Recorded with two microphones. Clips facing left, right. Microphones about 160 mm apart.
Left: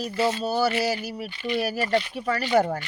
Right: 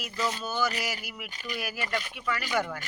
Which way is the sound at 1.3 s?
40° right (ahead or behind).